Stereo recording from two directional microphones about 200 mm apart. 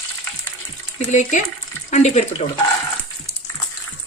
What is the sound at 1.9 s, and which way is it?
Speech, 35° left (ahead or behind).